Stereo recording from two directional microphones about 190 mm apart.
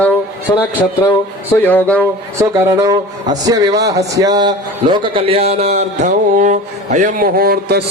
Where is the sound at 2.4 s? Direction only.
15° right (ahead or behind).